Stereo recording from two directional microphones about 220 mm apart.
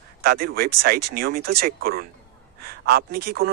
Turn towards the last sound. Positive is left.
turn(degrees=-45)  # may be behind; listen again after turning